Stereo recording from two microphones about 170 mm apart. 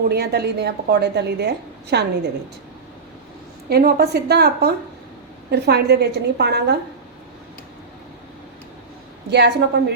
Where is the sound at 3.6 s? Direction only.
65° right (ahead or behind).